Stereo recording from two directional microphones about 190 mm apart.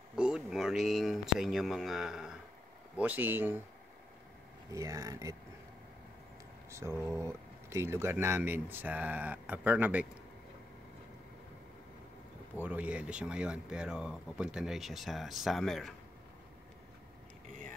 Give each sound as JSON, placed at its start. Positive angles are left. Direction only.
{"t": 0.1, "sound": "speech", "side_deg": -5}
{"t": 4.6, "sound": "speech", "side_deg": -15}
{"t": 6.7, "sound": "speech", "side_deg": -15}
{"t": 12.6, "sound": "speech", "side_deg": -5}